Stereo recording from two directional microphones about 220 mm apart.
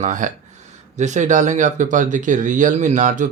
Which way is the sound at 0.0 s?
35° right (ahead or behind).